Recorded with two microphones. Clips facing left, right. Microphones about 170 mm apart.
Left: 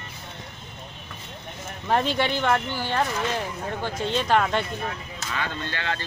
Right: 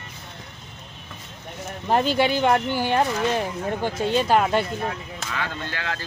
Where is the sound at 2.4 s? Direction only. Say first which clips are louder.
Right 4 dB; 15° right (ahead or behind).